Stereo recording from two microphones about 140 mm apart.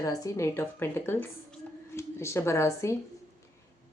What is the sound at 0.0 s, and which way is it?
A woman's voice, 25° left (ahead or behind).